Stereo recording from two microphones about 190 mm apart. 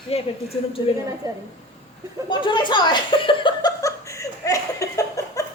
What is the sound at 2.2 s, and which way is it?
Chuckle, 25° left (ahead or behind).